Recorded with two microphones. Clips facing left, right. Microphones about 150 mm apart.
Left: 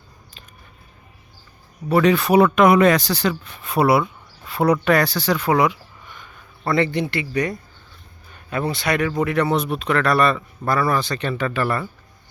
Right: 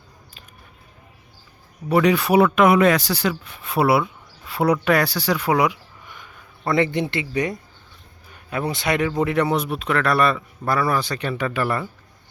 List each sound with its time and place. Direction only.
1.9 s speech: 10° right (ahead or behind)
8.3 s speech: 10° right (ahead or behind)